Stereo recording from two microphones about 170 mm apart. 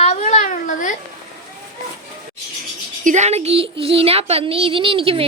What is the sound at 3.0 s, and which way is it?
Speech, 45° right (ahead or behind).